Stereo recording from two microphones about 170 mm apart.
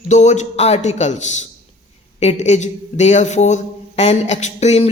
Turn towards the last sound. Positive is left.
turn(degrees=40)  # may be behind; listen again after turning